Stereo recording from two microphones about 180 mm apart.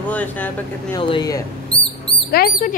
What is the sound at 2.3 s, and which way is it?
Speech, 55° left (ahead or behind).